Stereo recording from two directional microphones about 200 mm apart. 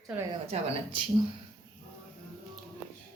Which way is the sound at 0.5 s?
35° right (ahead or behind).